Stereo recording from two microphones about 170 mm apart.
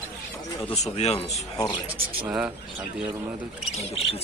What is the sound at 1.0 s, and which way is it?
Speech, 40° left (ahead or behind).